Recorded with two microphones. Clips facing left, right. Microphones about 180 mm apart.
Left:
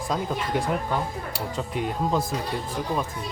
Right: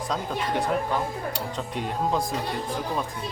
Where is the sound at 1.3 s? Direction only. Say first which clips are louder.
Left 2 dB; 5° left (ahead or behind).